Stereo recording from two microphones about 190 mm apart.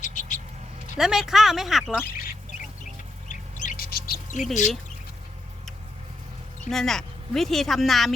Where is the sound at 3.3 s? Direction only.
40° left (ahead or behind).